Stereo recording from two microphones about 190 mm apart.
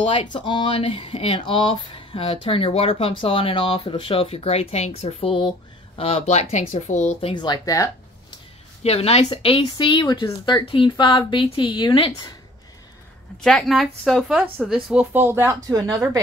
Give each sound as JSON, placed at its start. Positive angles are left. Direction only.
{"t": 0.1, "sound": "speech", "side_deg": 25}
{"t": 8.8, "sound": "speech", "side_deg": 30}
{"t": 13.4, "sound": "speech", "side_deg": 0}